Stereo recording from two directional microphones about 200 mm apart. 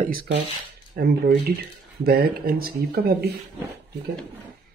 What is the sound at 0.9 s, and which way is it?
Speech, 50° right (ahead or behind).